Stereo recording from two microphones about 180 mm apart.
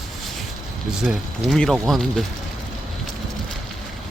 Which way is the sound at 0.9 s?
5° right (ahead or behind).